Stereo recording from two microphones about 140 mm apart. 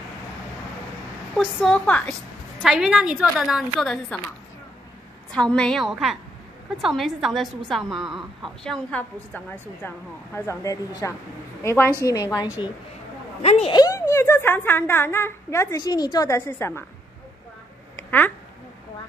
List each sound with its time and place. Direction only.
1.3 s a woman's voice: centre (ahead or behind)
2.6 s a woman's voice: 5° right (ahead or behind)
5.3 s a woman's voice: 5° left (ahead or behind)
8.9 s a woman's voice: 15° left (ahead or behind)
13.4 s a woman's voice: 45° left (ahead or behind)
13.7 s a woman's voice: 25° left (ahead or behind)